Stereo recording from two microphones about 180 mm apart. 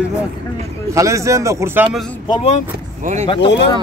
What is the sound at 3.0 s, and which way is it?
Speech, 40° right (ahead or behind).